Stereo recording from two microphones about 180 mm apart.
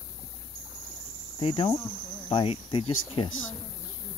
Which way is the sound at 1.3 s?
30° left (ahead or behind).